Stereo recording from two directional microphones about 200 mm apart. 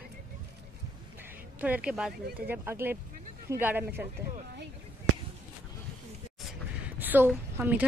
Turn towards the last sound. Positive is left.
turn(degrees=-10)  # may be behind; listen again after turning